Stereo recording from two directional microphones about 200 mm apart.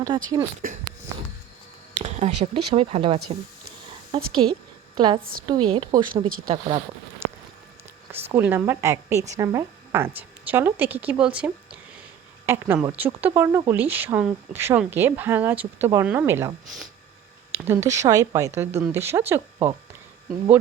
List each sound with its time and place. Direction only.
0.0 s speech: 20° right (ahead or behind)
0.6 s speech: 45° right (ahead or behind)
1.9 s speech: 40° right (ahead or behind); by 6.2 s 20° right (ahead or behind)
6.2 s speech: 45° right (ahead or behind)
6.5 s speech: 25° right (ahead or behind)
8.4 s a woman's voice: 10° right (ahead or behind)
16.6 s speech: centre (ahead or behind)